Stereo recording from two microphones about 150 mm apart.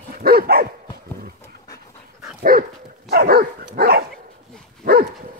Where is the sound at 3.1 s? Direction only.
85° right.